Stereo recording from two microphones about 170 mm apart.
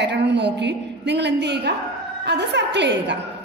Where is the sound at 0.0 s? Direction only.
90° right.